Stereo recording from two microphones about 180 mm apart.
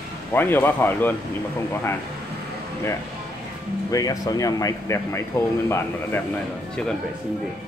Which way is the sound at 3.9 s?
20° left (ahead or behind).